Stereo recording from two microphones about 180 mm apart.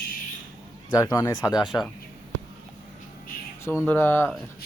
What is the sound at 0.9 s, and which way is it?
Speech, 20° left (ahead or behind).